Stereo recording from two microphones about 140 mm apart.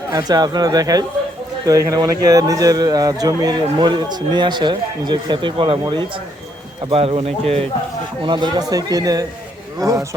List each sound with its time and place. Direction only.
0.1 s speech: 30° right (ahead or behind); by 7.6 s 45° right (ahead or behind)
8.2 s speech: 30° right (ahead or behind)